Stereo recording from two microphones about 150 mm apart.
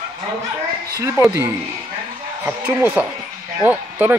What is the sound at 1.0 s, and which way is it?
A man's voice, 20° right (ahead or behind).